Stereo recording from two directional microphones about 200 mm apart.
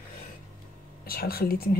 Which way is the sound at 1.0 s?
50° left (ahead or behind).